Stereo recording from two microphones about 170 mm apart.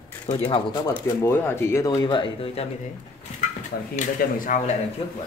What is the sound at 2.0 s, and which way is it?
Speech, 30° left (ahead or behind).